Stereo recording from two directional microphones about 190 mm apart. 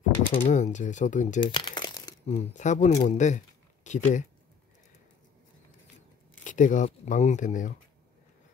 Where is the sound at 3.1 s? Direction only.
40° left (ahead or behind).